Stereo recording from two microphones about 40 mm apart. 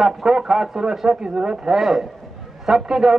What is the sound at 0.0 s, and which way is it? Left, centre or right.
A man's voice, centre.